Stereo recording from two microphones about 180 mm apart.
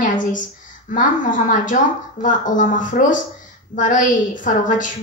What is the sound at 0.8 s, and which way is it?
A woman's voice, 45° left (ahead or behind).